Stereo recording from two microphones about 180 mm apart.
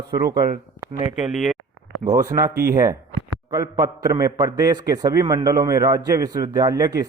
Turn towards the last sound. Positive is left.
turn(degrees=-20)  # may be behind; listen again after turning